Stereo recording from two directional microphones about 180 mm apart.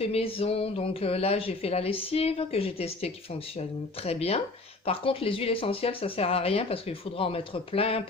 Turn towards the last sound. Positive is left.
turn(degrees=30)  # may be behind; listen again after turning